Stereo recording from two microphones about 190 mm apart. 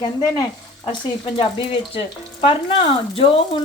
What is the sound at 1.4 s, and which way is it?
Speech, 30° left (ahead or behind).